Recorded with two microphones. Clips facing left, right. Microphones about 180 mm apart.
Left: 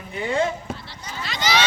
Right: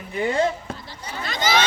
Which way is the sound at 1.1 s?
50° right (ahead or behind).